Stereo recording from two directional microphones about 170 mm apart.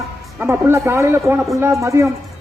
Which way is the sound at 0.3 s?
15° right (ahead or behind).